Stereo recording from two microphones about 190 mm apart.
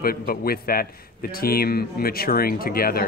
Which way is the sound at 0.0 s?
50° left (ahead or behind).